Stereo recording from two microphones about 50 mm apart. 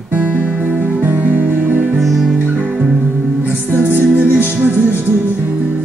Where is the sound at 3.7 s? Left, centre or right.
Right.